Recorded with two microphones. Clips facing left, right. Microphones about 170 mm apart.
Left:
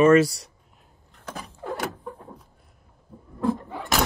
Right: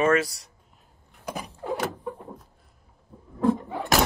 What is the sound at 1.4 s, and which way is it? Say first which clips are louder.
Vehicle: right 1 dB; centre (ahead or behind).